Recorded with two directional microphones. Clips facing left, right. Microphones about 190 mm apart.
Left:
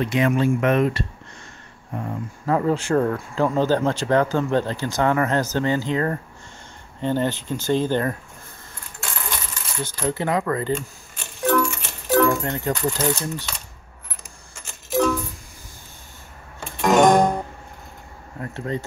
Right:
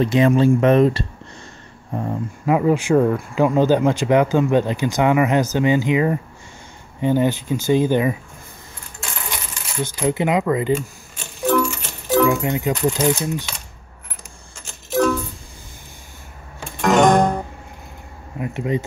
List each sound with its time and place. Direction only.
0.0 s speech: 30° right (ahead or behind)
2.4 s speech: 10° right (ahead or behind)
9.8 s speech: 15° right (ahead or behind)
11.1 s music: 5° right (ahead or behind)
15.0 s music: centre (ahead or behind)
16.8 s music: 5° left (ahead or behind)
18.4 s speech: 15° right (ahead or behind)